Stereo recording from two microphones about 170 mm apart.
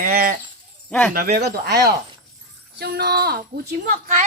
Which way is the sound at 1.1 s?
65° right (ahead or behind).